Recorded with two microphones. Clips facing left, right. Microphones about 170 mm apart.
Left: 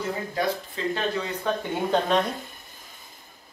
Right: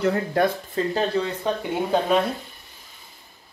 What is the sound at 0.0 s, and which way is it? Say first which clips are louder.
Speech: right 7 dB; 60° right (ahead or behind).